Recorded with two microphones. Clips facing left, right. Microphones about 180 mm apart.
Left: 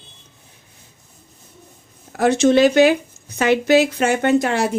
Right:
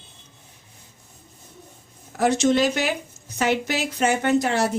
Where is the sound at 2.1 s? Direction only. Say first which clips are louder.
Left 5 dB; 65° left (ahead or behind).